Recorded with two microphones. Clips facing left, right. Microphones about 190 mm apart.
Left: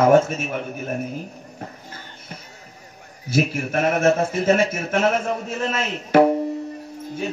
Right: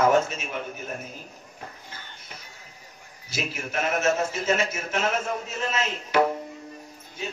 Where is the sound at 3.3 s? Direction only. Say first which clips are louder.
Left 10 dB; 50° left (ahead or behind).